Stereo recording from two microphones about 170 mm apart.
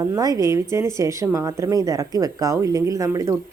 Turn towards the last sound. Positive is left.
turn(degrees=-20)  # may be behind; listen again after turning